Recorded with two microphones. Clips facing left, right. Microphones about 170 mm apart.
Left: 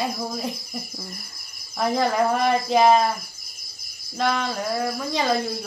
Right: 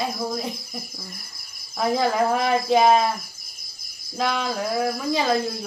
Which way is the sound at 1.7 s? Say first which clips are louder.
Even; centre (ahead or behind).